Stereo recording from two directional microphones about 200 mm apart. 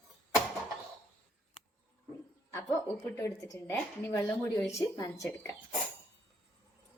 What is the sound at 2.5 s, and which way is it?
A woman's voice, 15° left (ahead or behind).